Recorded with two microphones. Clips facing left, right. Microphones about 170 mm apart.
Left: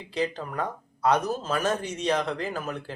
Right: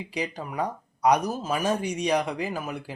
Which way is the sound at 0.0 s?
10° right (ahead or behind).